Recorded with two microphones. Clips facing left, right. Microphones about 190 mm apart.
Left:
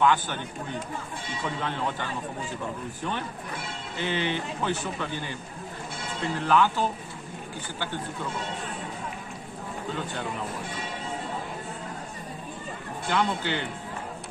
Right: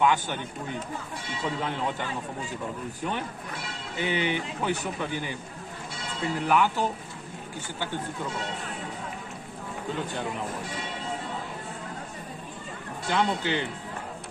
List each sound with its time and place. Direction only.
0.0 s speech: 15° right (ahead or behind)
1.4 s speech: 15° right (ahead or behind)
3.9 s speech: 15° right (ahead or behind)
13.1 s speech: 15° right (ahead or behind)